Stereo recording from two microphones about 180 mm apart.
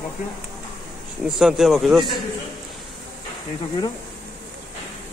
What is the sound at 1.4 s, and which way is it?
Speech, centre (ahead or behind).